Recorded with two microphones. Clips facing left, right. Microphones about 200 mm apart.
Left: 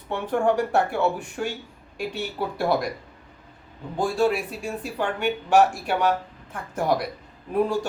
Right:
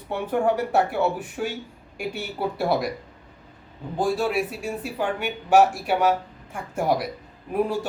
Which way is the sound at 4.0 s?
5° right (ahead or behind).